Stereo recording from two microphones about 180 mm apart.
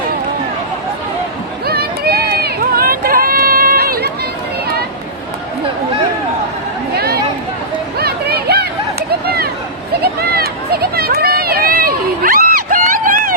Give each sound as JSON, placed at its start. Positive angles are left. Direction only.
{"t": 1.6, "sound": "run", "side_deg": -60}
{"t": 6.9, "sound": "chatter", "side_deg": -60}
{"t": 7.9, "sound": "a sound", "side_deg": -60}